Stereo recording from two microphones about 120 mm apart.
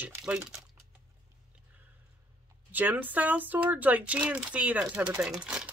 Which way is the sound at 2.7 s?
15° right (ahead or behind).